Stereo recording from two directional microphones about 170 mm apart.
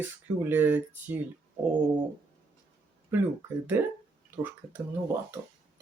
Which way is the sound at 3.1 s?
10° right (ahead or behind).